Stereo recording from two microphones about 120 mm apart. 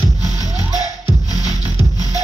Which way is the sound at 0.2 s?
30° left (ahead or behind).